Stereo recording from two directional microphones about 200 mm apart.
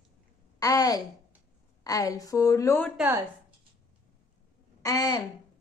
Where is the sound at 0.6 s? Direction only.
20° left (ahead or behind).